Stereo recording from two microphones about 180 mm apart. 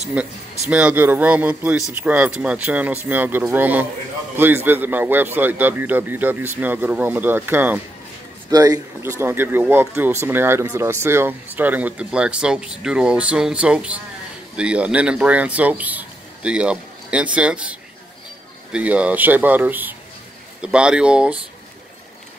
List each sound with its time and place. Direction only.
0.0 s a man's voice: 5° right (ahead or behind)